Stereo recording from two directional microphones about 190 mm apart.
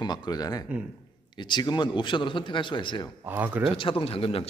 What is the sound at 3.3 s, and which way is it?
Speech, 10° right (ahead or behind).